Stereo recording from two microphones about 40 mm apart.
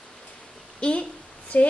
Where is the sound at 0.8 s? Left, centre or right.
Left.